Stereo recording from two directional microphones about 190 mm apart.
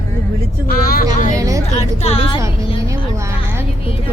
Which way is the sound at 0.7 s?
50° left (ahead or behind).